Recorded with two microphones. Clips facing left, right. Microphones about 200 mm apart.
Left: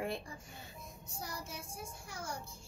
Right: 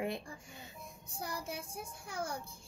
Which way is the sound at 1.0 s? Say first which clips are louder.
Right 4 dB; 55° right (ahead or behind).